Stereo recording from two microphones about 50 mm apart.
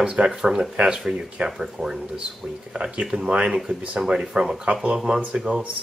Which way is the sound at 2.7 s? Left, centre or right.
Centre.